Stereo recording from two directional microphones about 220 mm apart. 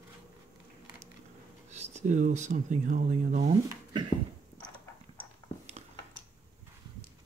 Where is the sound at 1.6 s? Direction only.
30° right (ahead or behind).